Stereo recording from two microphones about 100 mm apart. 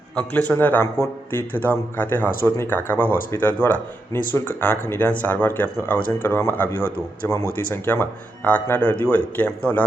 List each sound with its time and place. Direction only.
0.2 s speech: 15° left (ahead or behind)